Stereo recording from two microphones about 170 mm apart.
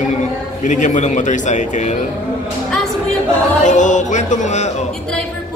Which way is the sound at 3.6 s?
45° left (ahead or behind).